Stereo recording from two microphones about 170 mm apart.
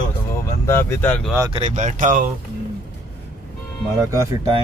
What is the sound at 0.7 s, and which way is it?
Speech, 15° left (ahead or behind).